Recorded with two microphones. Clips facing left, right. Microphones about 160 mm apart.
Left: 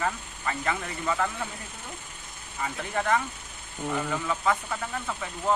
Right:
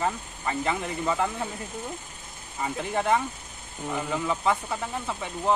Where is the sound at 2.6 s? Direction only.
25° right (ahead or behind).